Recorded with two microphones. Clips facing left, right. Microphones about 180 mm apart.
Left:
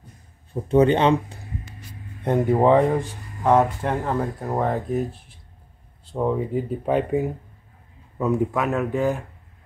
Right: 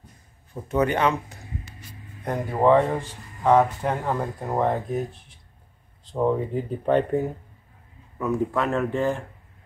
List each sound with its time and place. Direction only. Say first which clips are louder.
0.7 s speech: left 5 dB; 25° left (ahead or behind)
2.2 s speech: left 3 dB; 20° left (ahead or behind)
8.5 s speech: left 1 dB; centre (ahead or behind)